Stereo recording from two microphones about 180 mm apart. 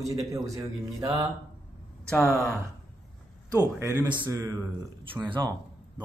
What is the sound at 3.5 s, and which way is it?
Speech, 20° right (ahead or behind).